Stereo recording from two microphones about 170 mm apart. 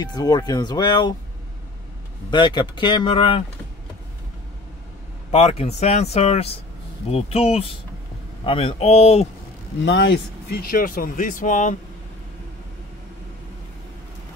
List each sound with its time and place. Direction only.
0.0 s speech: 25° left (ahead or behind)
2.3 s speech: 25° left (ahead or behind)
5.3 s speech: 35° left (ahead or behind)
9.8 s speech: 90° left; by 11.7 s 50° left (ahead or behind)